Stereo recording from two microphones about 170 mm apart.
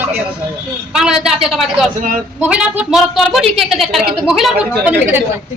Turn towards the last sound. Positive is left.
turn(degrees=-10)  # may be behind; listen again after turning